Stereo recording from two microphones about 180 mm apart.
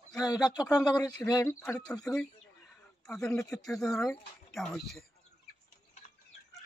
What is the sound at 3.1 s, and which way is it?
Speech, 5° left (ahead or behind).